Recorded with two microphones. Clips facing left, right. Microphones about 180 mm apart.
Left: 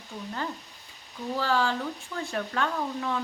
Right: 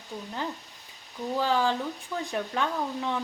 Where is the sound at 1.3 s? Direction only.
15° right (ahead or behind).